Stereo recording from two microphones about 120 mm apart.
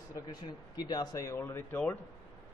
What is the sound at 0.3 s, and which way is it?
A man's voice, 35° left (ahead or behind).